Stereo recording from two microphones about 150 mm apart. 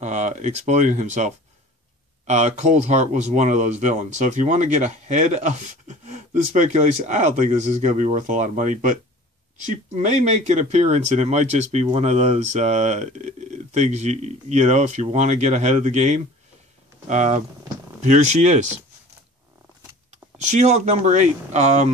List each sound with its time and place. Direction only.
0.0 s speech: 50° right (ahead or behind)
20.4 s speech: 50° right (ahead or behind)